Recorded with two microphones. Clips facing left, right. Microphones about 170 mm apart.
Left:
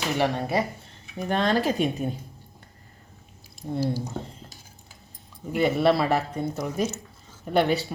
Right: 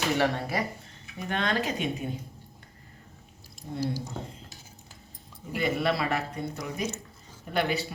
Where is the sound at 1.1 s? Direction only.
35° left (ahead or behind).